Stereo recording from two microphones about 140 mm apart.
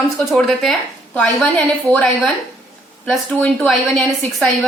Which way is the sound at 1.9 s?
10° left (ahead or behind).